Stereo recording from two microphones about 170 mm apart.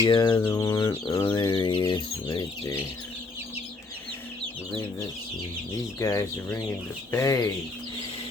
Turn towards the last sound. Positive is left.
turn(degrees=20)  # may be behind; listen again after turning